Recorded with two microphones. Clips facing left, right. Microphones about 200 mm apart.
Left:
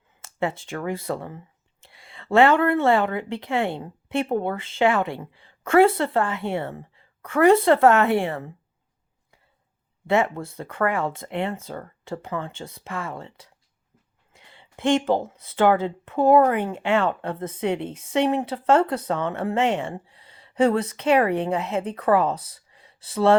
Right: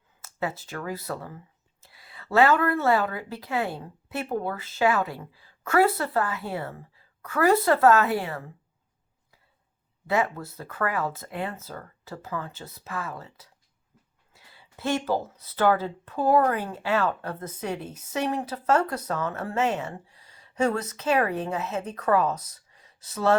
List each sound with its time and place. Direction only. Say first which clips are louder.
0.3 s speech: left 4 dB; 25° left (ahead or behind)
10.1 s speech: left 4 dB; 25° left (ahead or behind)